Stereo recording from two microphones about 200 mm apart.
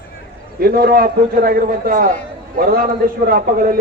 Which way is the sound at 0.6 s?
50° right (ahead or behind).